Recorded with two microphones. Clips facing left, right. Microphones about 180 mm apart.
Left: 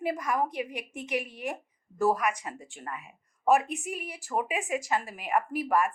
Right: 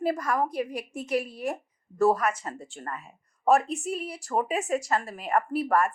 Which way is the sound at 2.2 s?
15° left (ahead or behind).